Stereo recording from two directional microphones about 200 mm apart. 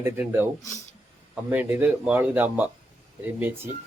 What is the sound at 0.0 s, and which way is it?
Speech, 10° right (ahead or behind).